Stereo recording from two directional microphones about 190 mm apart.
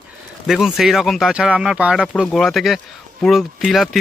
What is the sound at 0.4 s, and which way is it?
Speech, centre (ahead or behind).